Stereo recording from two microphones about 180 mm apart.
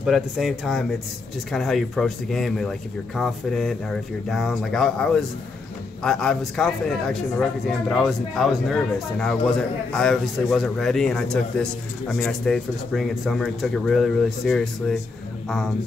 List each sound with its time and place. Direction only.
0.0 s a man's voice: centre (ahead or behind)